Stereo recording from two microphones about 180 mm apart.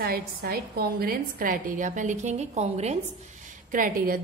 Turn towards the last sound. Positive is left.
turn(degrees=-50)  # may be behind; listen again after turning